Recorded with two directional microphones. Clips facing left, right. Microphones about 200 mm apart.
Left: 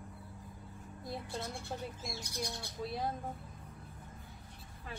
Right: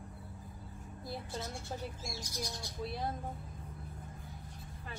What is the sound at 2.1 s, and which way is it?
Speech, 60° left (ahead or behind).